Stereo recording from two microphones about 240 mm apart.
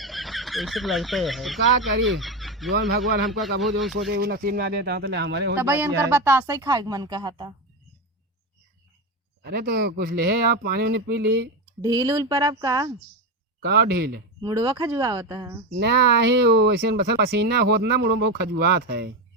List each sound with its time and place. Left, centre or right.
0.0 s speech: centre
2.1 s fowl: centre
2.7 s speech: right
4.1 s speech: right
5.5 s speech: centre
9.4 s speech: right
11.8 s speech: centre
13.6 s speech: right
14.4 s speech: centre
15.7 s speech: right